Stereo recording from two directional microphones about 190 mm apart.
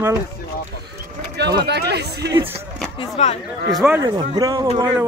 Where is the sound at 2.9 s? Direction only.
35° left (ahead or behind).